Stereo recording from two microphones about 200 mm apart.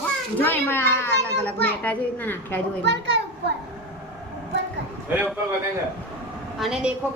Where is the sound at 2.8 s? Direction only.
60° right (ahead or behind).